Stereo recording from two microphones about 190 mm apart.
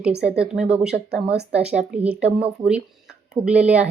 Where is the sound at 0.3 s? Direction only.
5° right (ahead or behind).